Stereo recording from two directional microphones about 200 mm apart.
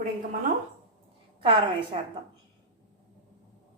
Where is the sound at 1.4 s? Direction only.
25° right (ahead or behind).